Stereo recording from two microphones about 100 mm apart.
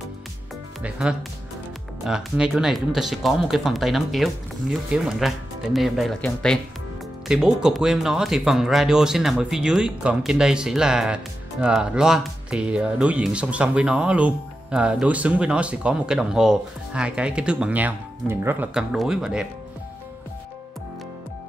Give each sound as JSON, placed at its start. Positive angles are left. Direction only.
{"t": 0.8, "sound": "speech", "side_deg": -5}
{"t": 7.2, "sound": "speech", "side_deg": -5}
{"t": 18.7, "sound": "speech", "side_deg": -5}